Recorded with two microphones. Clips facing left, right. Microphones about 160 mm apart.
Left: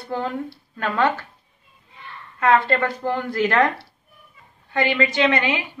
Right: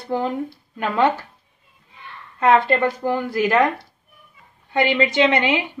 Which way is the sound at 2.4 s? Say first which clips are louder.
Right 2 dB; 15° right (ahead or behind).